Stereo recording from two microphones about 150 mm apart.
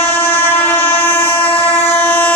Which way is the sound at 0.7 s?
15° left (ahead or behind).